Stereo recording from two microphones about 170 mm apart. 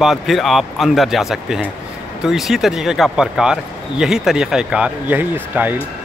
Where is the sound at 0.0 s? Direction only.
Centre (ahead or behind).